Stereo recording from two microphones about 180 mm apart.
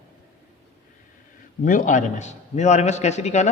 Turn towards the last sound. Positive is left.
turn(degrees=40)  # may be behind; listen again after turning